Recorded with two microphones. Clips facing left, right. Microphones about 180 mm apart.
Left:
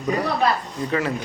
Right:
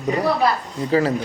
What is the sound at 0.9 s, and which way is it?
Speech, 35° right (ahead or behind).